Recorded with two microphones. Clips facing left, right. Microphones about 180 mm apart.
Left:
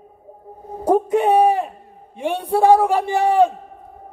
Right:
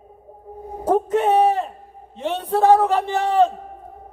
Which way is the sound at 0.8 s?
10° left (ahead or behind).